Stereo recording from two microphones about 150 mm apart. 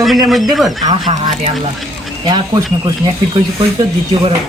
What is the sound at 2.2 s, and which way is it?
Speech, 25° right (ahead or behind).